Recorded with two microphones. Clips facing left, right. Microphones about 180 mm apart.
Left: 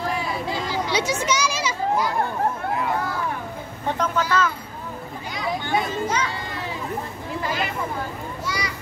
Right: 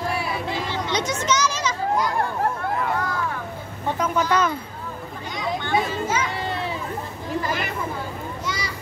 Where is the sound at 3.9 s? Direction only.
5° right (ahead or behind).